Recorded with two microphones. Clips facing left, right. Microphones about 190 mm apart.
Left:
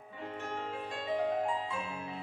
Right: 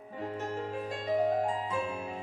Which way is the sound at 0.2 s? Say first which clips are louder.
Right 4 dB; 40° right (ahead or behind).